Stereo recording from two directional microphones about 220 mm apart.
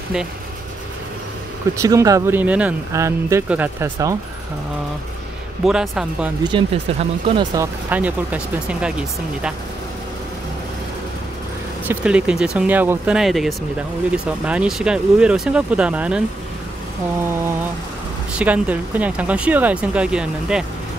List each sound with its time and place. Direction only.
1.8 s speech: 15° right (ahead or behind)
5.7 s speech: 5° right (ahead or behind)
6.4 s speech: 25° right (ahead or behind)
7.5 s speech: 10° right (ahead or behind)
11.9 s speech: 5° right (ahead or behind)
18.4 s speech: 5° right (ahead or behind)